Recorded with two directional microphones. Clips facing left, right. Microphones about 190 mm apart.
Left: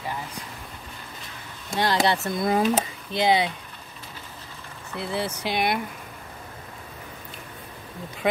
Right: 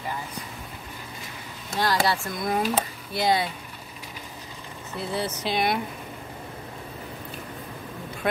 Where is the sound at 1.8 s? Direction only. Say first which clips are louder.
Left 2 dB; 20° left (ahead or behind).